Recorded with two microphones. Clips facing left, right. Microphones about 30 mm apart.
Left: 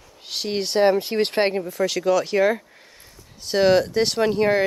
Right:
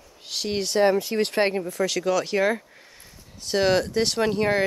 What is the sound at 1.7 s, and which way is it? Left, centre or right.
Speech, centre.